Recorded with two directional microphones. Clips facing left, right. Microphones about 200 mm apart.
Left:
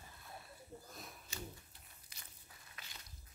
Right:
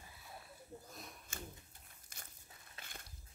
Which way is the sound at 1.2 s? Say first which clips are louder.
Left 1 dB; 50° right (ahead or behind).